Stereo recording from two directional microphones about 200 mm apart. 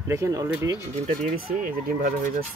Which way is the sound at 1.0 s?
40° right (ahead or behind).